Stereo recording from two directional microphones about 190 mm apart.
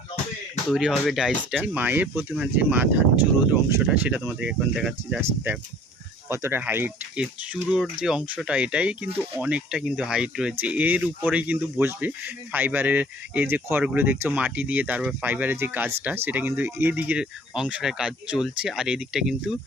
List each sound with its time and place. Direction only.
0.7 s speech: centre (ahead or behind)
6.2 s speech: 15° right (ahead or behind)